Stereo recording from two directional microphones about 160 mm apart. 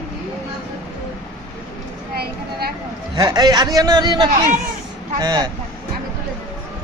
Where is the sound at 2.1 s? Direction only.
75° right (ahead or behind).